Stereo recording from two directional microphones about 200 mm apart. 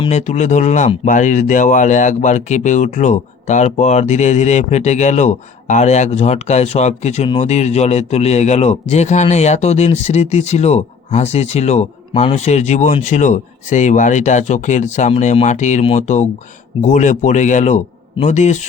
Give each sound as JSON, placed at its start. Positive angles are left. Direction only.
{"t": 0.0, "sound": "speech", "side_deg": 35}